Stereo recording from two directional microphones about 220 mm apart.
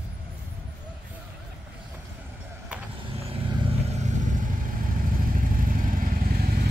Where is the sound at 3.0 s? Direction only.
25° right (ahead or behind); by 6.7 s 40° right (ahead or behind).